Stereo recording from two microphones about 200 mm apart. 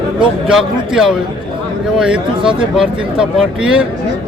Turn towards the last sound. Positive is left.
turn(degrees=-5)  # may be behind; listen again after turning